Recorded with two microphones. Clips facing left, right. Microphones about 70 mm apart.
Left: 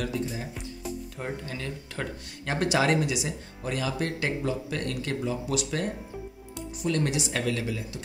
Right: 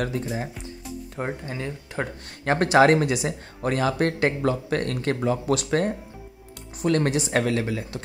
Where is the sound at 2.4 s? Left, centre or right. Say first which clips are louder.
Right 8 dB; right.